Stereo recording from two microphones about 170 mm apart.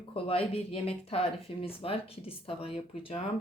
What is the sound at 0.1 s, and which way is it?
Speech, 35° left (ahead or behind).